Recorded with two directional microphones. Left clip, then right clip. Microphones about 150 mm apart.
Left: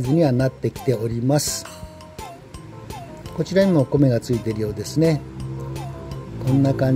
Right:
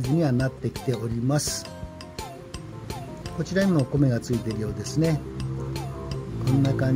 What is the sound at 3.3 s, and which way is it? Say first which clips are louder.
Speech: left 7 dB; 25° left (ahead or behind).